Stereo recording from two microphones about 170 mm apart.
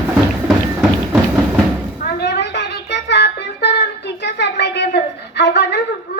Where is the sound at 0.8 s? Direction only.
5° right (ahead or behind).